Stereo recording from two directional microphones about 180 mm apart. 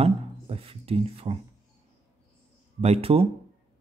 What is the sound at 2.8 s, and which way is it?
Speech, 35° right (ahead or behind).